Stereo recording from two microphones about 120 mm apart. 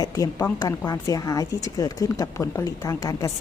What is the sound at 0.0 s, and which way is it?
A woman's voice, 30° left (ahead or behind).